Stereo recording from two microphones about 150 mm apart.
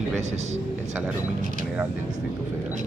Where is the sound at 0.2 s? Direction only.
50° right (ahead or behind).